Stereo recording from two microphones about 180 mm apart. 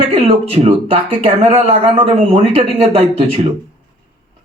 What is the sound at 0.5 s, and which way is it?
Speech, 35° right (ahead or behind).